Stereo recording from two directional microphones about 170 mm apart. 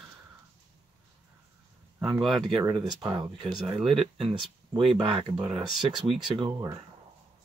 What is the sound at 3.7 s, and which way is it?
Speech, centre (ahead or behind).